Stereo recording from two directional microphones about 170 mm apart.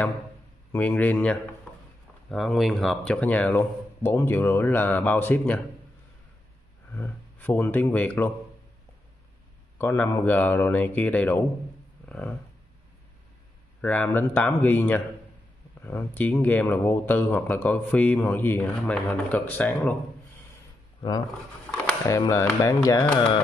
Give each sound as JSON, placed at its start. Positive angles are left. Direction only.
{"t": 0.7, "sound": "speech", "side_deg": 10}
{"t": 6.9, "sound": "speech", "side_deg": 10}
{"t": 9.8, "sound": "speech", "side_deg": 15}
{"t": 12.1, "sound": "a sound", "side_deg": 10}
{"t": 13.7, "sound": "speech", "side_deg": 10}
{"t": 21.6, "sound": "a sound", "side_deg": 15}
{"t": 22.2, "sound": "speech", "side_deg": 20}